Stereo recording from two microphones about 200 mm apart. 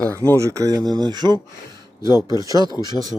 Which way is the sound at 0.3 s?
15° right (ahead or behind).